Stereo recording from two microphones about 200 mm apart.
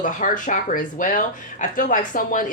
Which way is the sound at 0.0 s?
40° left (ahead or behind).